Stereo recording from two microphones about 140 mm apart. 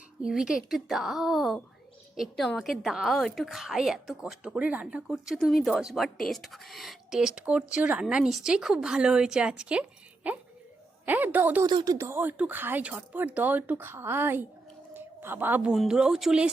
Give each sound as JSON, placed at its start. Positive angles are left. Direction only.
{"t": 0.2, "sound": "a woman's voice", "side_deg": -5}
{"t": 11.6, "sound": "speech", "side_deg": -30}
{"t": 11.9, "sound": "speech", "side_deg": -20}
{"t": 14.9, "sound": "a sound", "side_deg": -15}
{"t": 15.7, "sound": "a woman's voice", "side_deg": -5}